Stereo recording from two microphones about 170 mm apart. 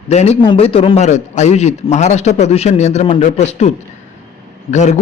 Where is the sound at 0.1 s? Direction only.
40° left (ahead or behind).